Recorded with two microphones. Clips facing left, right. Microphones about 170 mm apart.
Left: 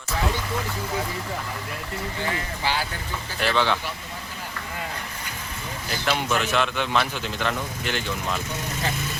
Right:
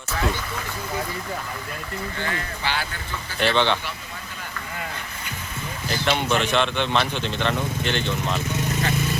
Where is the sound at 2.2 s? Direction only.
15° left (ahead or behind).